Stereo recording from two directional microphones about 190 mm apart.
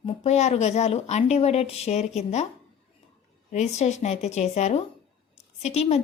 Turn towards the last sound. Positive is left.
turn(degrees=35)  # may be behind; listen again after turning